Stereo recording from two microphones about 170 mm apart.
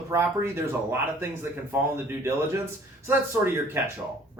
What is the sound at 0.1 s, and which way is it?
Speech, 15° right (ahead or behind).